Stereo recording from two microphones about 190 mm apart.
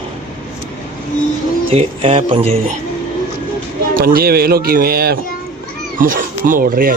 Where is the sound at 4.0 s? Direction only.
50° right (ahead or behind).